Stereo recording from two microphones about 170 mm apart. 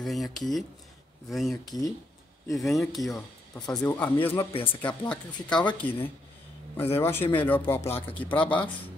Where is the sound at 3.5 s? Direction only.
20° left (ahead or behind).